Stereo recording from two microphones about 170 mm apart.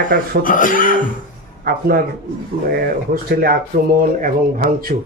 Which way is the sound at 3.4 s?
60° right (ahead or behind).